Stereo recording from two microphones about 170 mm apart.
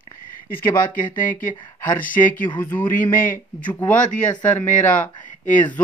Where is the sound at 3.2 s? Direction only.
50° left (ahead or behind).